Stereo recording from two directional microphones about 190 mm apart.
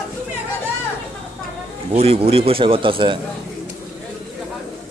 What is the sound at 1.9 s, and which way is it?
Speech, 30° right (ahead or behind).